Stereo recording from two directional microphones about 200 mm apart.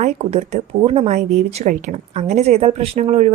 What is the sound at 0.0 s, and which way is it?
Speech, 30° right (ahead or behind).